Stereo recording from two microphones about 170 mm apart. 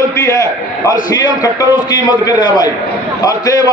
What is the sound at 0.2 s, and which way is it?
A man's voice, 15° left (ahead or behind).